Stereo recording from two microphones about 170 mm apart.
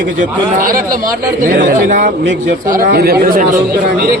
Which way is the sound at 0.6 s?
60° right (ahead or behind).